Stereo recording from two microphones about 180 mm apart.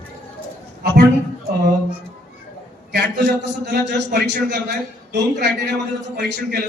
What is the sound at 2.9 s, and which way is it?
A man's voice, 65° right (ahead or behind).